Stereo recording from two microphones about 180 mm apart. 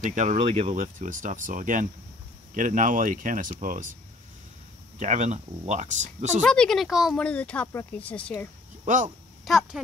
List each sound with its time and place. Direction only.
0.0 s speech: 45° right (ahead or behind)
4.9 s speech: 45° right (ahead or behind)
6.4 s speech: 5° left (ahead or behind)
8.8 s speech: 45° right (ahead or behind)
9.4 s speech: centre (ahead or behind)